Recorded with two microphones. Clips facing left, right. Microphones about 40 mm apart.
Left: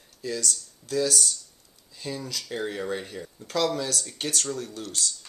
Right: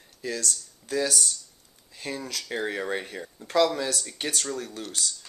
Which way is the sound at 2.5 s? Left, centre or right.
Right.